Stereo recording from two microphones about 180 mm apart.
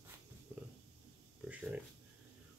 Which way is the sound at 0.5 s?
10° right (ahead or behind).